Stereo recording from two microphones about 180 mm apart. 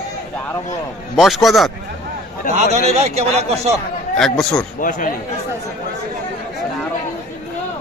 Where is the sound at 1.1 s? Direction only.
Centre (ahead or behind).